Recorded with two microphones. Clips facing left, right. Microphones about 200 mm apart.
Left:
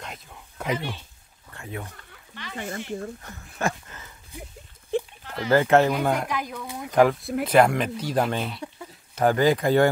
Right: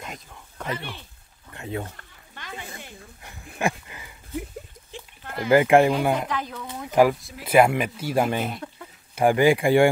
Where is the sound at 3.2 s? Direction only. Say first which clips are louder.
Right 6 dB; 15° right (ahead or behind).